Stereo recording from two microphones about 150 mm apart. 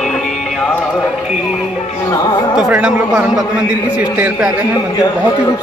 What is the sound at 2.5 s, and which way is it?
A man's voice, 5° right (ahead or behind).